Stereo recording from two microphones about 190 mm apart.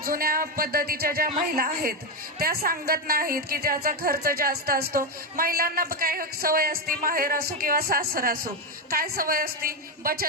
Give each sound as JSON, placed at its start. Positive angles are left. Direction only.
{"t": 0.0, "sound": "a woman's voice", "side_deg": -50}